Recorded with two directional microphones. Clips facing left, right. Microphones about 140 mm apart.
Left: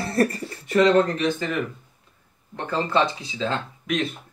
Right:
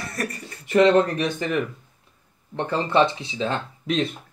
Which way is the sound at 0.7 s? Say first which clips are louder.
Right 1 dB; 25° right (ahead or behind).